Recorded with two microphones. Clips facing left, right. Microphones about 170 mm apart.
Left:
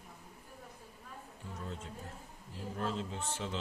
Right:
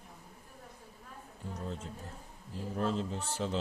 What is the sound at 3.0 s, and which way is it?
Speech, 40° right (ahead or behind).